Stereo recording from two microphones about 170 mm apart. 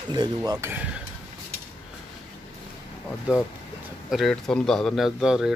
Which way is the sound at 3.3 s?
5° right (ahead or behind).